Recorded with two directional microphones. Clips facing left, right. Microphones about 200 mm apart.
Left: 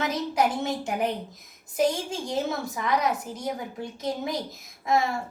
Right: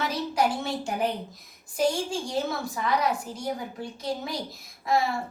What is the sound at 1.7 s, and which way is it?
A woman's voice, 20° left (ahead or behind).